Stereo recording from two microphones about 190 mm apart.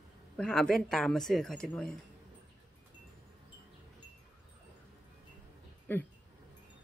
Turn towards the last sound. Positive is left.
turn(degrees=10)  # may be behind; listen again after turning